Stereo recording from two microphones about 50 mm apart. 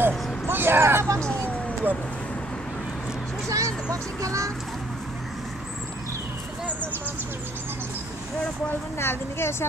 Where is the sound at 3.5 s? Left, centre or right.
Right.